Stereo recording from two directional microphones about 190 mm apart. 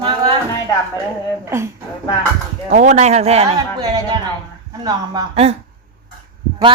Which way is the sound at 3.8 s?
20° right (ahead or behind).